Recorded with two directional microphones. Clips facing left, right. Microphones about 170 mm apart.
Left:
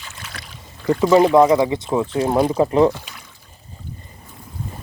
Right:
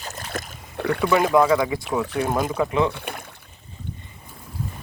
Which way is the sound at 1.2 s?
25° left (ahead or behind).